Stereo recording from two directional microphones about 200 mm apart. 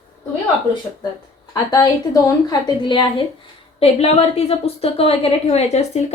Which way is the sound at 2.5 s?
20° left (ahead or behind).